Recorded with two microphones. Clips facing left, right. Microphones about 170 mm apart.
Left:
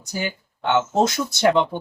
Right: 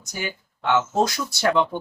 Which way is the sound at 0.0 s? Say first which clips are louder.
Left 4 dB; 30° left (ahead or behind).